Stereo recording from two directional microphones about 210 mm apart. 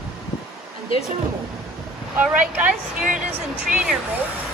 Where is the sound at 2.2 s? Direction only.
5° right (ahead or behind).